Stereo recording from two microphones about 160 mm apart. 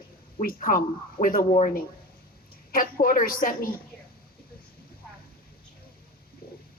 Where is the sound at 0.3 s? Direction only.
55° left (ahead or behind).